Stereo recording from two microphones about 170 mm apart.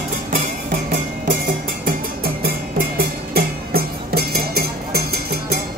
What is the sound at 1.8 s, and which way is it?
Music, 60° right (ahead or behind).